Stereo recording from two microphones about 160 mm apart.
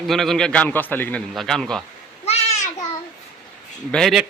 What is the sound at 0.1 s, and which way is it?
A man's voice, centre (ahead or behind).